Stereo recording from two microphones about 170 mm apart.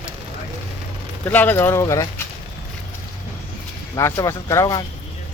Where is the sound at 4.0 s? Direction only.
20° left (ahead or behind).